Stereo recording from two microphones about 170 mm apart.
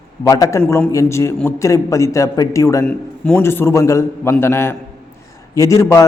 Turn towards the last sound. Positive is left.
turn(degrees=20)  # may be behind; listen again after turning